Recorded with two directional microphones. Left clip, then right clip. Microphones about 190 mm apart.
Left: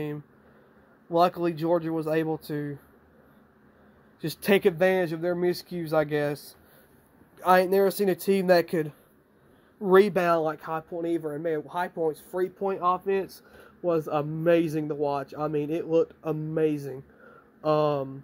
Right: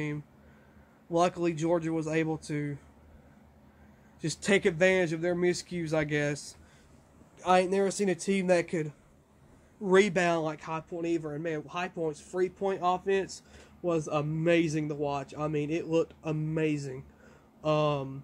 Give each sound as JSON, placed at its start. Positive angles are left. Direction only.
{"t": 1.1, "sound": "speech", "side_deg": 15}
{"t": 4.2, "sound": "speech", "side_deg": 20}
{"t": 7.3, "sound": "speech", "side_deg": 30}
{"t": 9.8, "sound": "speech", "side_deg": 10}